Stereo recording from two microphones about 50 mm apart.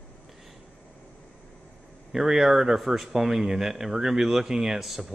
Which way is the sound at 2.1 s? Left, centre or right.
Centre.